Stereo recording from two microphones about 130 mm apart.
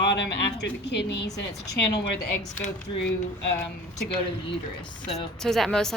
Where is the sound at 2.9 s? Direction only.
40° left (ahead or behind).